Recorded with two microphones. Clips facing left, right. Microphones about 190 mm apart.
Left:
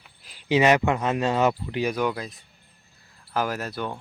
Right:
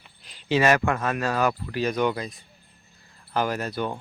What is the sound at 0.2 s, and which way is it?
Speech, 5° left (ahead or behind).